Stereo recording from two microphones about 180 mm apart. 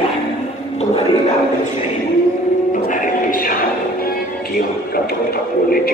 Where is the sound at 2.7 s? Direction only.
45° left (ahead or behind).